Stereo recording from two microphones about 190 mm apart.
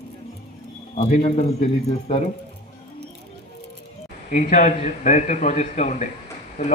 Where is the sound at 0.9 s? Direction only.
35° left (ahead or behind).